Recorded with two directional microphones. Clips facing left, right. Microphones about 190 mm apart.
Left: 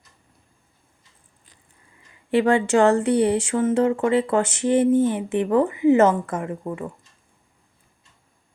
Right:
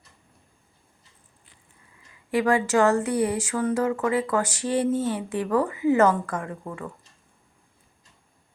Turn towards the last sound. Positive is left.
turn(degrees=20)  # may be behind; listen again after turning